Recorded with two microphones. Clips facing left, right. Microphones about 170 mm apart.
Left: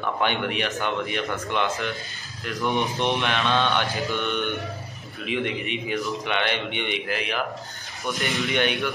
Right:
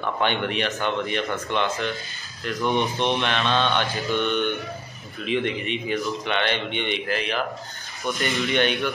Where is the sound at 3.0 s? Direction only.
10° left (ahead or behind).